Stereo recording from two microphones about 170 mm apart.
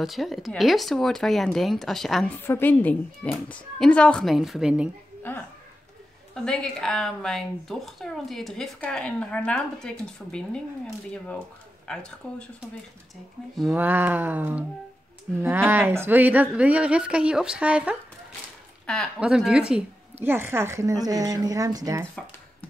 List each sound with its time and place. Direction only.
0.0 s speech: centre (ahead or behind)
2.4 s a woman's voice: 15° left (ahead or behind); by 4.8 s 5° right (ahead or behind)
5.3 s a woman's voice: 10° left (ahead or behind)
11.9 s speech: 5° left (ahead or behind)
13.6 s a woman's voice: 5° right (ahead or behind)
19.1 s a woman's voice: 5° right (ahead or behind); by 22.0 s 20° right (ahead or behind)